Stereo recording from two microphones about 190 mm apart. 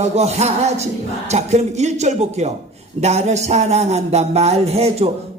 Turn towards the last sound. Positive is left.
turn(degrees=-35)  # may be behind; listen again after turning